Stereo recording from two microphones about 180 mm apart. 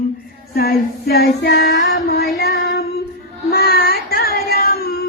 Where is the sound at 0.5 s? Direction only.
60° left (ahead or behind).